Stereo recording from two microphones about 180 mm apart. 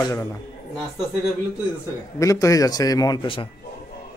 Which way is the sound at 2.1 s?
20° left (ahead or behind).